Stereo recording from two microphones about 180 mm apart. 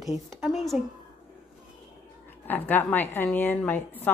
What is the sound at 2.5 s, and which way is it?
A woman's voice, 10° left (ahead or behind).